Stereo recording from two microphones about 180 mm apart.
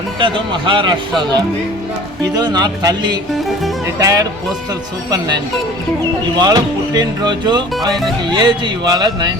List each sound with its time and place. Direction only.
0.2 s speech: 25° right (ahead or behind)
6.3 s speech: 20° right (ahead or behind)